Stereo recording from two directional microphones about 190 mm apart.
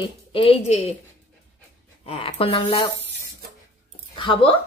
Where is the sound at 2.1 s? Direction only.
30° left (ahead or behind).